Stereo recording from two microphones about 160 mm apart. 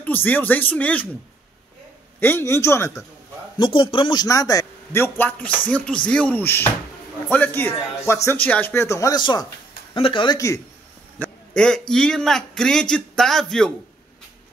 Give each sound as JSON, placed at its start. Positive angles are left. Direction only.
{"t": 0.0, "sound": "speech", "side_deg": 10}
{"t": 2.1, "sound": "speech", "side_deg": 15}
{"t": 3.5, "sound": "a man's voice", "side_deg": 30}
{"t": 11.1, "sound": "a sound", "side_deg": 5}
{"t": 11.9, "sound": "a man's voice", "side_deg": 5}